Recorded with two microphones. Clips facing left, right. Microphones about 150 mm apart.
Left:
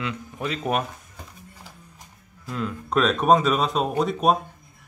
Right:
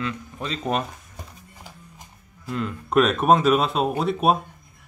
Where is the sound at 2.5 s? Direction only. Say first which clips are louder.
Right 1 dB; centre (ahead or behind).